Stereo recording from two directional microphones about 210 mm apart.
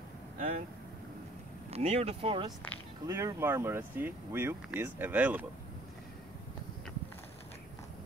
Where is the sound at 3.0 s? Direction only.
15° right (ahead or behind).